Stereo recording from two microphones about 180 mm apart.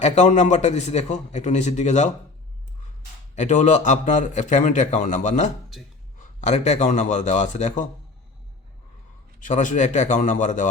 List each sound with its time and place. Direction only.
0.0 s a man's voice: 40° left (ahead or behind)
3.3 s a man's voice: 40° left (ahead or behind)
9.4 s a man's voice: 45° left (ahead or behind)